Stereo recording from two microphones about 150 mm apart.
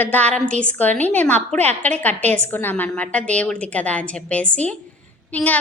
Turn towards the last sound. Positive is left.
turn(degrees=10)  # may be behind; listen again after turning